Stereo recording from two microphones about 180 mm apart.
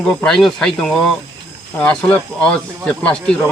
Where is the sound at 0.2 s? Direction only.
Centre (ahead or behind).